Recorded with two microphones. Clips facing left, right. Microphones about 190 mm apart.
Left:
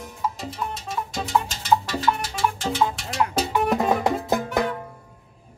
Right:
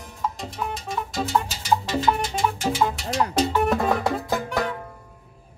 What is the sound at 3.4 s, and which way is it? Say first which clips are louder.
Music: right 1 dB; 15° left (ahead or behind).